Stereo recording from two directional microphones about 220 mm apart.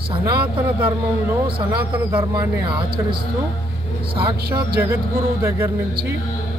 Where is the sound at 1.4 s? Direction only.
25° right (ahead or behind).